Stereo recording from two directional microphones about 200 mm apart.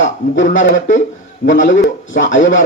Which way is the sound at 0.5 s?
70° left (ahead or behind).